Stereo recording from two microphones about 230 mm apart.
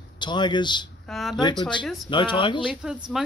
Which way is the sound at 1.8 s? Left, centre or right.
Centre.